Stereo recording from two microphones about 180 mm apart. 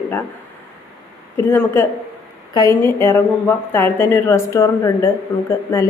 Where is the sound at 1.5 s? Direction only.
15° left (ahead or behind).